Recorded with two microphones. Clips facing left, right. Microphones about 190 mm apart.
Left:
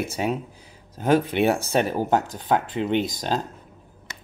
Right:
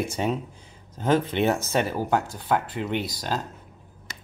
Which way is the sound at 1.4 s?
10° left (ahead or behind).